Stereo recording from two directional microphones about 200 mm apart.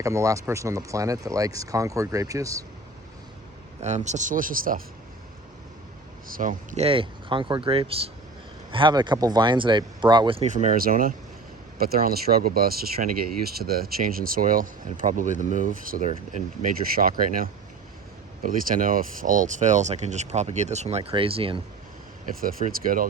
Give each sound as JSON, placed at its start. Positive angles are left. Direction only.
{"t": 0.0, "sound": "speech", "side_deg": -15}
{"t": 3.8, "sound": "speech", "side_deg": -35}
{"t": 6.2, "sound": "speech", "side_deg": -45}
{"t": 22.4, "sound": "speech", "side_deg": -45}